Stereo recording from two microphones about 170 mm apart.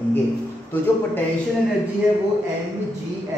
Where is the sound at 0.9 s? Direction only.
15° left (ahead or behind).